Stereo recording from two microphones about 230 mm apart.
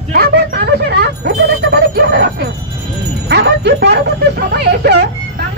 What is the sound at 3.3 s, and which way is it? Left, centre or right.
Speech, right.